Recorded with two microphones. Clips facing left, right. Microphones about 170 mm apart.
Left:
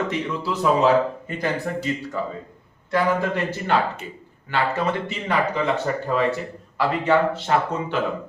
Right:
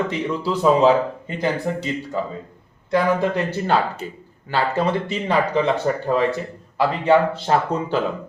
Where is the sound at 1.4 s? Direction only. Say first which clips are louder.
Right 3 dB; 20° right (ahead or behind).